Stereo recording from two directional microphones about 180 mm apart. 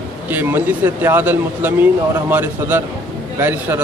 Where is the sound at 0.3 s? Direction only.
10° right (ahead or behind).